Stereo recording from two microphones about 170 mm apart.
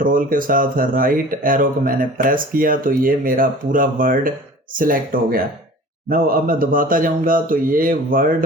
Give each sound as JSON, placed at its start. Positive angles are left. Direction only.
{"t": 0.0, "sound": "speech", "side_deg": -55}